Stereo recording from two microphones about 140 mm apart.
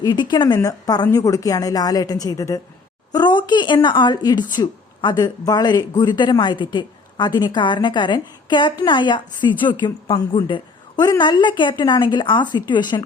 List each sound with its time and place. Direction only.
0.0 s a woman's voice: 30° left (ahead or behind)